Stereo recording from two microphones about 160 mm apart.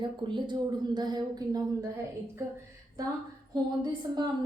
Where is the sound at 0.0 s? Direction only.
30° right (ahead or behind).